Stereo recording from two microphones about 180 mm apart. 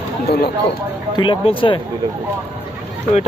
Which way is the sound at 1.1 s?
25° left (ahead or behind).